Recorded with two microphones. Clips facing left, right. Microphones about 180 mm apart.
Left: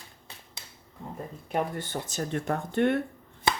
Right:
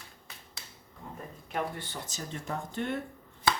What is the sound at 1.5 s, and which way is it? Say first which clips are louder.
Speech: left 5 dB; 45° left (ahead or behind).